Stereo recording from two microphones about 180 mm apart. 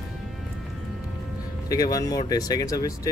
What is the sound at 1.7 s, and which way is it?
Speech, 20° left (ahead or behind).